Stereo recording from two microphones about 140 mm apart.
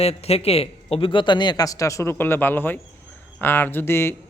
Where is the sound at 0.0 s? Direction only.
45° left (ahead or behind).